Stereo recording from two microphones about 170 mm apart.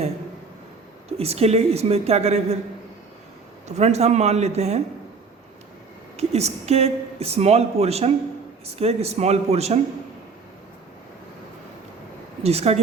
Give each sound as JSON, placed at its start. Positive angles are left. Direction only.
{"t": 1.1, "sound": "speech", "side_deg": -35}
{"t": 3.7, "sound": "speech", "side_deg": -40}
{"t": 6.1, "sound": "speech", "side_deg": -40}
{"t": 12.4, "sound": "speech", "side_deg": -40}